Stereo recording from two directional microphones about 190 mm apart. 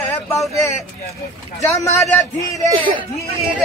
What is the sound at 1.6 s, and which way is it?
Speech, 15° left (ahead or behind).